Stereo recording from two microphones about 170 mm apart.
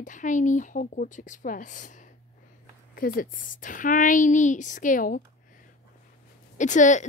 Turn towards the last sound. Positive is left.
turn(degrees=45)  # may be behind; listen again after turning